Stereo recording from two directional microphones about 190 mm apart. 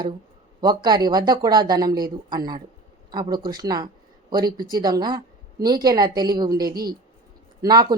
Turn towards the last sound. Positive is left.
turn(degrees=-20)  # may be behind; listen again after turning